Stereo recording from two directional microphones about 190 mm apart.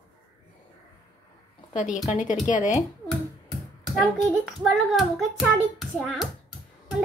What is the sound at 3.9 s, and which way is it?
A child's voice, centre (ahead or behind).